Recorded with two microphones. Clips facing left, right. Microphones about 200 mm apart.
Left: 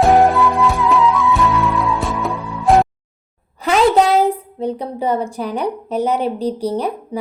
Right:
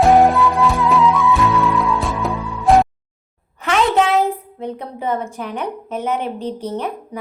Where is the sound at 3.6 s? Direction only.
35° left (ahead or behind).